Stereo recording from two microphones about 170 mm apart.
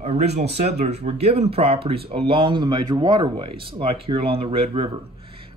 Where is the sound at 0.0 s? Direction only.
40° right (ahead or behind).